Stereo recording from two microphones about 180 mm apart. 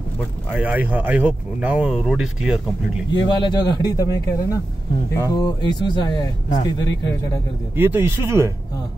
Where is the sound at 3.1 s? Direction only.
25° left (ahead or behind).